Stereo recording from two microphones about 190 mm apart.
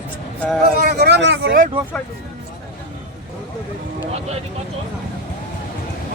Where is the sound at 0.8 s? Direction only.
55° right (ahead or behind).